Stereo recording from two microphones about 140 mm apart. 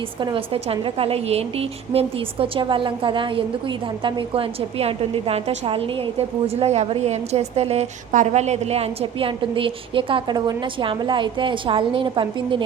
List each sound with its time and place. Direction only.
0.2 s a woman's voice: 35° right (ahead or behind)